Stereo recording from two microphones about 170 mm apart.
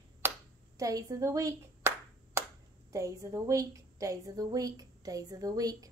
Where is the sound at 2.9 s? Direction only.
20° right (ahead or behind).